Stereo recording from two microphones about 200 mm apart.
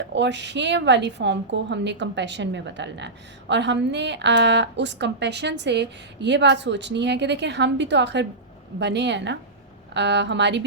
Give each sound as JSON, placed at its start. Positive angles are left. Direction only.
{"t": 0.1, "sound": "a woman's voice", "side_deg": -60}